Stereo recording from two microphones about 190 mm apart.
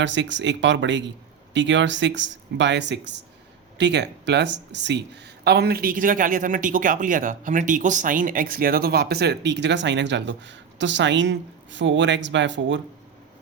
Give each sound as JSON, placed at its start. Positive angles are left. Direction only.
{"t": 0.0, "sound": "speech", "side_deg": -70}